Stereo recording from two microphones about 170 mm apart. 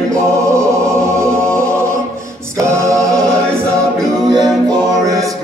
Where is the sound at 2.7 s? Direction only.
20° right (ahead or behind).